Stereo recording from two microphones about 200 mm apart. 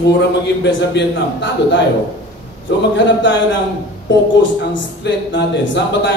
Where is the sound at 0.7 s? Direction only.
65° left (ahead or behind).